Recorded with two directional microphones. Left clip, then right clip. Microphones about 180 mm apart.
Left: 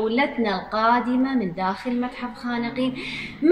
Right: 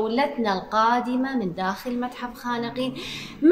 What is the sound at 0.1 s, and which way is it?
A woman's voice, 20° right (ahead or behind).